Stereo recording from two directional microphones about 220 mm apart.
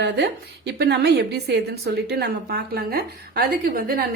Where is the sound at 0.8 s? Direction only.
50° right (ahead or behind).